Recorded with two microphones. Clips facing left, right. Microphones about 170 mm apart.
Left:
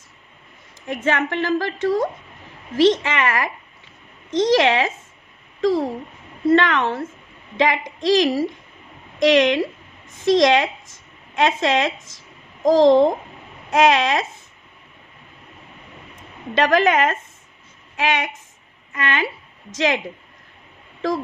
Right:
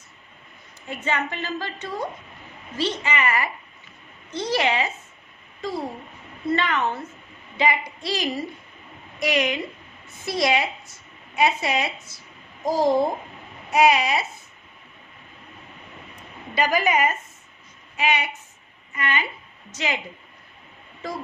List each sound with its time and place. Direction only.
0.8 s a woman's voice: 90° left
16.5 s a woman's voice: 90° left